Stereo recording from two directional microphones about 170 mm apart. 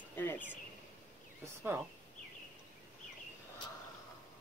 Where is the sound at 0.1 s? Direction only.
10° left (ahead or behind).